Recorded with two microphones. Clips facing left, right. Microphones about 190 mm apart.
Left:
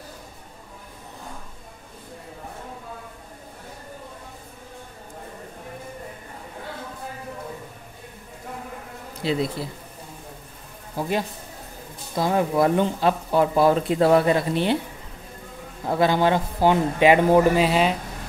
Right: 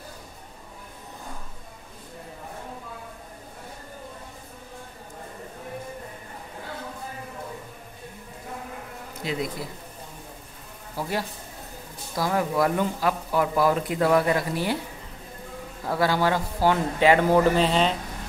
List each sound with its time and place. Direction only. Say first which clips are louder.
9.2 s speech: left 5 dB; 30° left (ahead or behind)
11.0 s speech: left 4 dB; 20° left (ahead or behind)
15.9 s speech: left 3 dB; 20° left (ahead or behind)